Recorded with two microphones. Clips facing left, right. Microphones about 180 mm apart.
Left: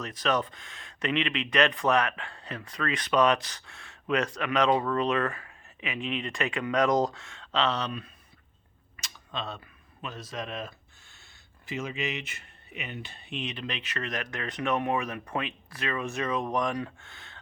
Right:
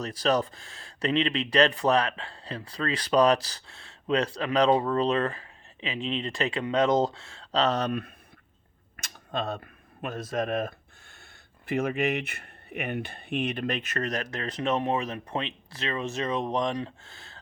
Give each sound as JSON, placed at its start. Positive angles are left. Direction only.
{"t": 0.0, "sound": "speech", "side_deg": -35}